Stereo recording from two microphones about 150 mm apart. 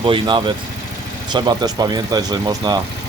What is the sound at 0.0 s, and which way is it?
Speech, 35° right (ahead or behind).